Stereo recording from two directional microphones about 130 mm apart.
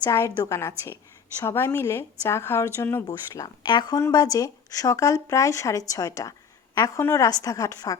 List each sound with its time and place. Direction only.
0.0 s a woman's voice: 25° left (ahead or behind)